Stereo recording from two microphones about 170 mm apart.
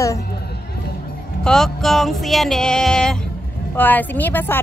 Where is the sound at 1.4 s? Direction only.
5° left (ahead or behind).